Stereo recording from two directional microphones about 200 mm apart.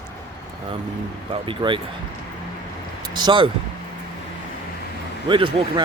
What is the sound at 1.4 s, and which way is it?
Speech, 25° right (ahead or behind).